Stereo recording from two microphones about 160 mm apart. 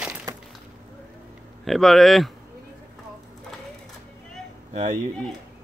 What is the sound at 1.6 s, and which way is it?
Speech, centre (ahead or behind).